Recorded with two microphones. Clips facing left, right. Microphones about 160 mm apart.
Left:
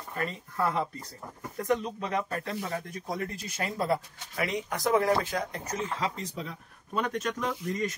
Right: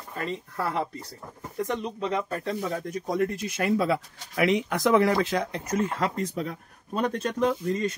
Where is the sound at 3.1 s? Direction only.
60° right (ahead or behind); by 5.6 s 85° right.